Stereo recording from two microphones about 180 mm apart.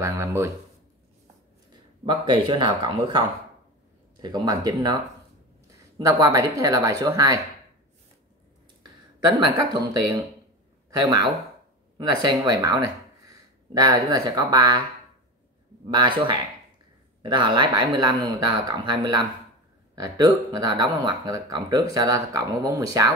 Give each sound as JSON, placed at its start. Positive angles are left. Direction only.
{"t": 0.0, "sound": "speech", "side_deg": -15}
{"t": 2.0, "sound": "speech", "side_deg": -25}
{"t": 5.9, "sound": "speech", "side_deg": -20}
{"t": 9.4, "sound": "speech", "side_deg": -20}
{"t": 11.0, "sound": "speech", "side_deg": -20}
{"t": 17.2, "sound": "speech", "side_deg": -25}